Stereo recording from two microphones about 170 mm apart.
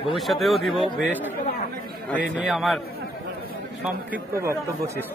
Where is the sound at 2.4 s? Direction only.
Centre (ahead or behind).